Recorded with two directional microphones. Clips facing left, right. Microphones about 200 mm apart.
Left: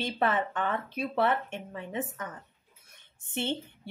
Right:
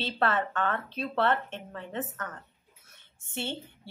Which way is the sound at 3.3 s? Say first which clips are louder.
Left 3 dB; 20° left (ahead or behind).